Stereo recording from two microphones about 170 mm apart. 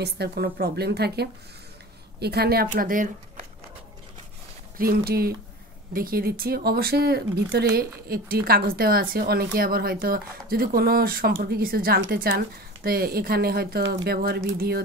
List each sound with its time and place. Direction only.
0.0 s speech: 70° right (ahead or behind); by 3.4 s 50° right (ahead or behind)
4.7 s a woman's voice: 60° right (ahead or behind)